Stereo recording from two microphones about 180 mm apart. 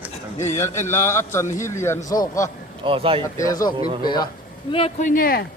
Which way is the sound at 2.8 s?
30° right (ahead or behind).